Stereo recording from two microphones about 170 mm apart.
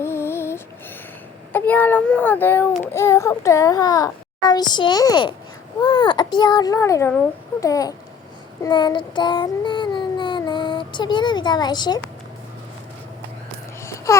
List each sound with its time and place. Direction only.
0.0 s music: 15° left (ahead or behind)
1.5 s a child's voice: 10° left (ahead or behind)
8.6 s child singing: 25° left (ahead or behind)
13.8 s babbling: 15° left (ahead or behind)